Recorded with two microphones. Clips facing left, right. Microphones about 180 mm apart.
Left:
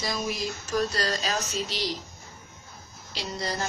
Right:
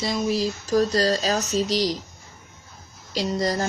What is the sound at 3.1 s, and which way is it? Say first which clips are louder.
Speech: right 9 dB; 40° right (ahead or behind).